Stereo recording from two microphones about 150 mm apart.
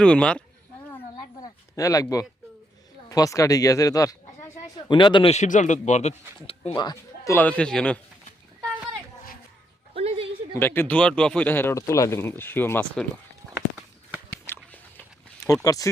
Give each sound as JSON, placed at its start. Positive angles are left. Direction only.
{"t": 0.0, "sound": "speech", "side_deg": 5}
{"t": 1.1, "sound": "a sound", "side_deg": 25}
{"t": 3.1, "sound": "speech", "side_deg": 20}
{"t": 5.3, "sound": "a man's voice", "side_deg": 55}
{"t": 6.7, "sound": "speech", "side_deg": 25}
{"t": 9.9, "sound": "a sound", "side_deg": -40}
{"t": 10.5, "sound": "speech", "side_deg": 15}
{"t": 14.4, "sound": "a sound", "side_deg": 10}
{"t": 15.6, "sound": "speech", "side_deg": 20}